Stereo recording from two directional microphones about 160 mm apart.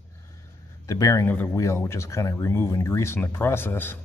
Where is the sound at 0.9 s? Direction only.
20° left (ahead or behind).